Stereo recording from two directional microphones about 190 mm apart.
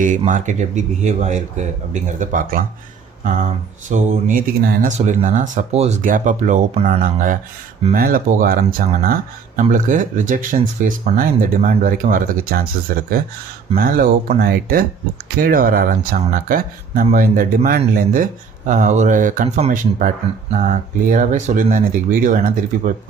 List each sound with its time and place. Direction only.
0.3 s speech: 40° right (ahead or behind)